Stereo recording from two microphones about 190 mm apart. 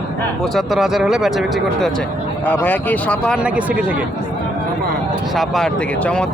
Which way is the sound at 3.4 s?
5° right (ahead or behind).